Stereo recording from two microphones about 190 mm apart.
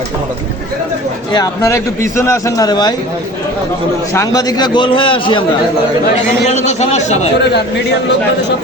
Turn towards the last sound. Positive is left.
turn(degrees=35)  # may be behind; listen again after turning